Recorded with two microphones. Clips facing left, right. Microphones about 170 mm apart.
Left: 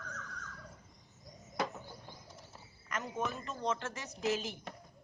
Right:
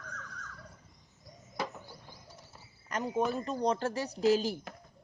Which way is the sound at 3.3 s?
35° right (ahead or behind).